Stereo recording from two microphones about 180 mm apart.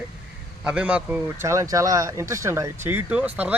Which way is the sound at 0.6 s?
5° right (ahead or behind).